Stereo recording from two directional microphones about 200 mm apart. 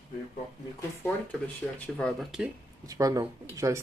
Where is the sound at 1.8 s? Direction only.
5° left (ahead or behind).